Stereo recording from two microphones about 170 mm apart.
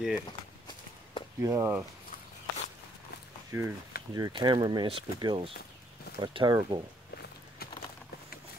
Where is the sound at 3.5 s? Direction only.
15° right (ahead or behind).